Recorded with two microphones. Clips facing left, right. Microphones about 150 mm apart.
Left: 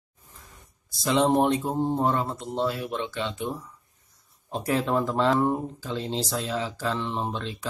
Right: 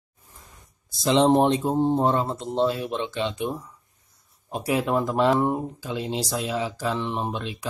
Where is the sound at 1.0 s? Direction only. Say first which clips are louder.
Right 3 dB; 25° right (ahead or behind).